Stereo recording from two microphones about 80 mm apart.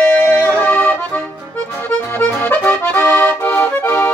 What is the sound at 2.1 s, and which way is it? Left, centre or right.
Accordion, left.